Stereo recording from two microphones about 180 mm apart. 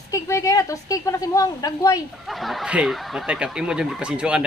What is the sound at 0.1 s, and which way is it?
A woman's voice, 15° left (ahead or behind).